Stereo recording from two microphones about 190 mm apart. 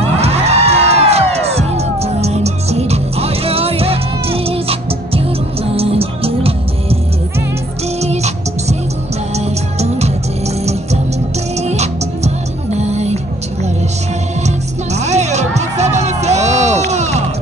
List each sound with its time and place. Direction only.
0.0 s music: 35° right (ahead or behind)
8.0 s music: 35° right (ahead or behind)
15.0 s music: 35° right (ahead or behind)